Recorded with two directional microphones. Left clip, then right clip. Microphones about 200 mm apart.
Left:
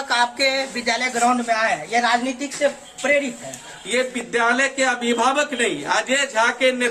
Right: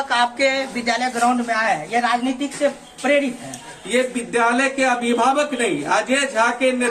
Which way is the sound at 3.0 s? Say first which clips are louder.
Right 1 dB; 40° left (ahead or behind).